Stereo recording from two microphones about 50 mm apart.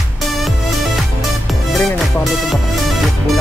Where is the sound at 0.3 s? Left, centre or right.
Centre.